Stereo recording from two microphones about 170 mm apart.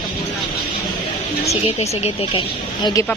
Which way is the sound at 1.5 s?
40° left (ahead or behind).